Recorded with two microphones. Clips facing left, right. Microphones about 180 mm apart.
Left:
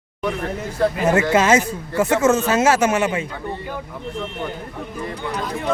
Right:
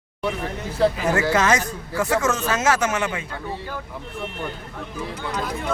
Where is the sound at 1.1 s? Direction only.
20° left (ahead or behind).